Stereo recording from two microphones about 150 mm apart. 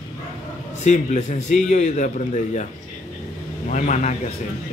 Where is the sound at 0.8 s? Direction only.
50° left (ahead or behind).